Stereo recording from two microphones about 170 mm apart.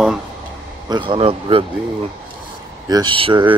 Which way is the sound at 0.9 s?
30° right (ahead or behind).